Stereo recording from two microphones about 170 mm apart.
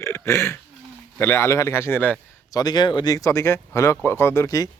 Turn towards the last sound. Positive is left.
turn(degrees=20)  # may be behind; listen again after turning